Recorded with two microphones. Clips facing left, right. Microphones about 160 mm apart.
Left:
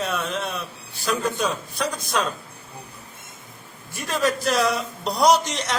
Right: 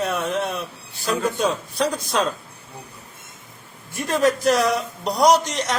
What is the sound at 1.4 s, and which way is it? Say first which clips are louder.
Speech: right 4 dB; 30° right (ahead or behind).